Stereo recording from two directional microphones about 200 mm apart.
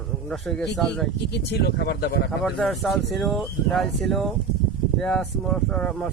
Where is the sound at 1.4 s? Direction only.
55° left (ahead or behind).